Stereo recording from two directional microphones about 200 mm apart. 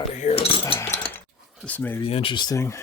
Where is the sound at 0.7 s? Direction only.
10° left (ahead or behind).